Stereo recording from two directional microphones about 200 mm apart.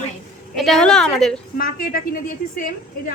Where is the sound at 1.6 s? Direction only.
45° left (ahead or behind).